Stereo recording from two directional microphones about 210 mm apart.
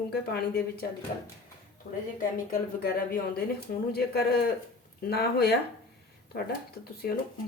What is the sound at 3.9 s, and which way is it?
Speech, 50° left (ahead or behind).